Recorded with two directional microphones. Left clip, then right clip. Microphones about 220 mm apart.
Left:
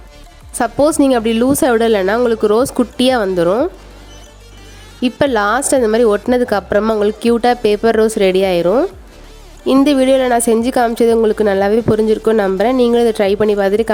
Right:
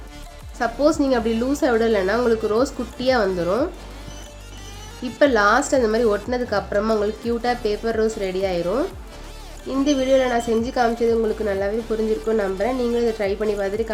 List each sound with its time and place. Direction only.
0.6 s a woman's voice: 50° left (ahead or behind)
5.0 s a woman's voice: 45° left (ahead or behind)
9.6 s a woman's voice: 50° left (ahead or behind)